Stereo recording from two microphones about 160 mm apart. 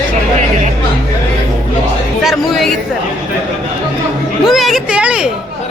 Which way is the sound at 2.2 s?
Centre (ahead or behind).